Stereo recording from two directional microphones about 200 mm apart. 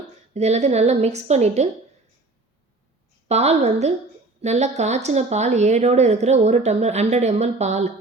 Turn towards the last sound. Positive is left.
turn(degrees=-35)  # may be behind; listen again after turning